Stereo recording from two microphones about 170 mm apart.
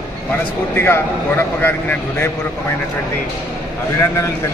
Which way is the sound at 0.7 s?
15° left (ahead or behind).